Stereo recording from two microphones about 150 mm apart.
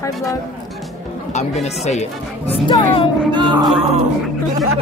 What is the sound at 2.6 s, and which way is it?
Speech, 35° left (ahead or behind).